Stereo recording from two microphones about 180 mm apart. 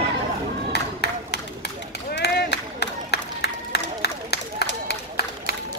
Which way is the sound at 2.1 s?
65° left (ahead or behind).